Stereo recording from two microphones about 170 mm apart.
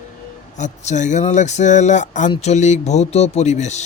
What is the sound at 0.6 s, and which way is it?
Speech, 45° left (ahead or behind).